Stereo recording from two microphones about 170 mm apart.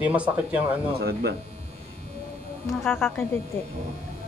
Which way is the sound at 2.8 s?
15° left (ahead or behind).